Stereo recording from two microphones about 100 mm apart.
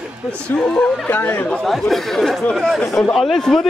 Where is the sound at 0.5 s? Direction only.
10° left (ahead or behind).